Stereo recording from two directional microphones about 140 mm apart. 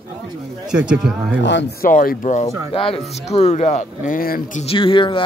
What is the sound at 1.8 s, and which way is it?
Speech, 85° left.